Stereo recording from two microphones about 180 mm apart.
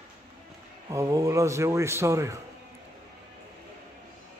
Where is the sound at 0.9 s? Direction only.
20° right (ahead or behind).